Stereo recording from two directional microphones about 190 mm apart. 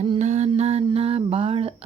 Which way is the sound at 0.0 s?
35° right (ahead or behind).